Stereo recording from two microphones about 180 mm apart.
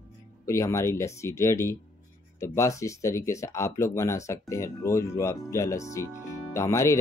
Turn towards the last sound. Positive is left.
turn(degrees=15)  # may be behind; listen again after turning